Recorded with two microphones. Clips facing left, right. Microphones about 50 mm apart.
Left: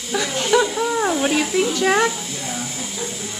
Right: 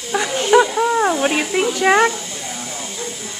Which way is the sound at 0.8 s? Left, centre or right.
Centre.